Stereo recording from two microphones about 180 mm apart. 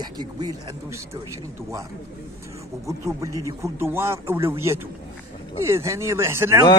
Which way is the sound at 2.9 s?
20° right (ahead or behind).